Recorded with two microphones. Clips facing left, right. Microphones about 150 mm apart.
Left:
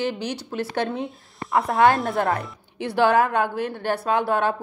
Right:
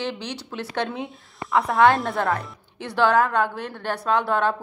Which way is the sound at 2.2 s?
25° left (ahead or behind).